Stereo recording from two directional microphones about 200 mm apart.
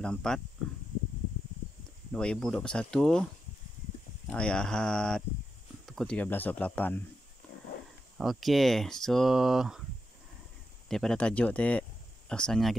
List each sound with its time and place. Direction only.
0.0 s speech: 5° left (ahead or behind)
2.1 s speech: 5° left (ahead or behind)
4.3 s speech: 5° left (ahead or behind)
8.2 s speech: centre (ahead or behind)
10.9 s speech: 5° left (ahead or behind)